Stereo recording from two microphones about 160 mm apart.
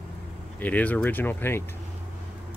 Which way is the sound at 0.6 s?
10° left (ahead or behind).